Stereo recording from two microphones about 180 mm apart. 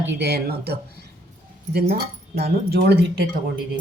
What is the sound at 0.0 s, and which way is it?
Speech, 75° right (ahead or behind).